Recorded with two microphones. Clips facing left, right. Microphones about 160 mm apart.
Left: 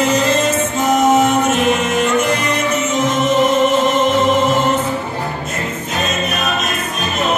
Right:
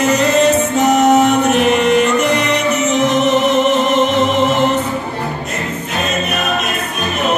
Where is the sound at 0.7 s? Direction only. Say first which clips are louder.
Left 1 dB; 70° right (ahead or behind).